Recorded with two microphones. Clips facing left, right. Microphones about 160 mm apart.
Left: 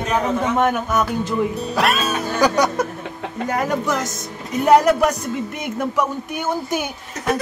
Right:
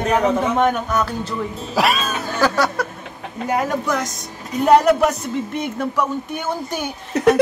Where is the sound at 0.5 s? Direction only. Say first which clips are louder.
Even; 5° left (ahead or behind).